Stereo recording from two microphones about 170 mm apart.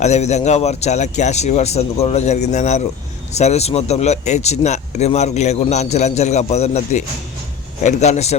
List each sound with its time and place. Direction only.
0.0 s speech: 40° left (ahead or behind)